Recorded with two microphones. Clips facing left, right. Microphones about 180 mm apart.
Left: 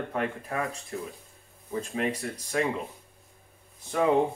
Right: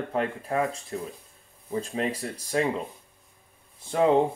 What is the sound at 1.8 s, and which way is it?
Speech, 30° right (ahead or behind).